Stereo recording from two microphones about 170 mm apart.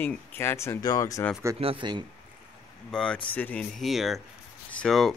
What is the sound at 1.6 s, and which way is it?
Speech, 30° right (ahead or behind).